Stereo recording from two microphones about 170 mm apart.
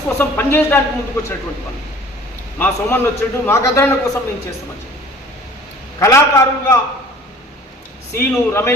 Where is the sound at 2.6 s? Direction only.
10° left (ahead or behind).